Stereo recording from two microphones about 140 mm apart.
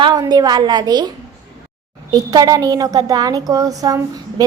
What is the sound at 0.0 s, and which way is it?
A woman's voice, 30° right (ahead or behind).